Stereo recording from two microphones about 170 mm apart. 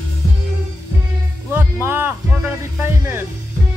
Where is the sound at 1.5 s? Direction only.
10° right (ahead or behind).